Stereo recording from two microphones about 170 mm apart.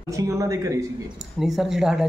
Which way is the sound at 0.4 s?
20° right (ahead or behind).